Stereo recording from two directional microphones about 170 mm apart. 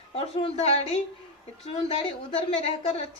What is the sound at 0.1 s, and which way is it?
Speech, 35° left (ahead or behind).